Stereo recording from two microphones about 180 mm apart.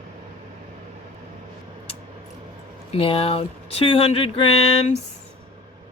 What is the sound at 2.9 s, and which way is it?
Speech, 30° left (ahead or behind).